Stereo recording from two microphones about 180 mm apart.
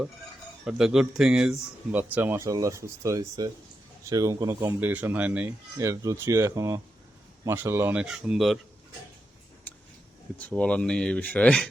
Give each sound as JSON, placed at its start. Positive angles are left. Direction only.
{"t": 0.6, "sound": "speech", "side_deg": -5}
{"t": 10.3, "sound": "speech", "side_deg": 5}